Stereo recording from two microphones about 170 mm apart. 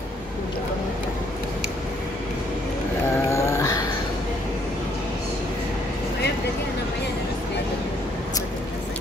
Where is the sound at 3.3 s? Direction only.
15° left (ahead or behind).